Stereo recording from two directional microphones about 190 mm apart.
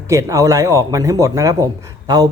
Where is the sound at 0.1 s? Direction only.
15° right (ahead or behind).